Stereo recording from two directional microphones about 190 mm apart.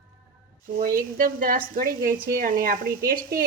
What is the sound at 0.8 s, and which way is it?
Speech, 45° right (ahead or behind).